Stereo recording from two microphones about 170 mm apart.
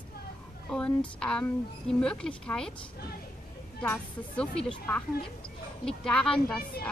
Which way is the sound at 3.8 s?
5° left (ahead or behind).